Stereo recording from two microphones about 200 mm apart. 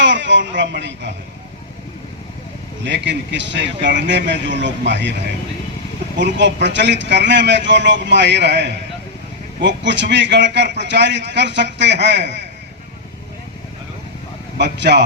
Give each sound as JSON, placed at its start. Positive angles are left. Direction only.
{"t": 0.0, "sound": "speech", "side_deg": -65}
{"t": 2.8, "sound": "a man's voice", "side_deg": -60}
{"t": 6.1, "sound": "a man's voice", "side_deg": -60}
{"t": 14.6, "sound": "a man's voice", "side_deg": -60}